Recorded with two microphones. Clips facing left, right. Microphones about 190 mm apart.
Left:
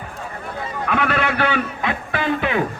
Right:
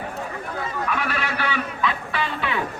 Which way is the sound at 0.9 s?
60° left (ahead or behind).